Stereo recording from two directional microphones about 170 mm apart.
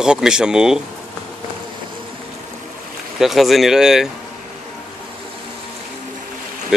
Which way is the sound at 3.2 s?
Centre (ahead or behind).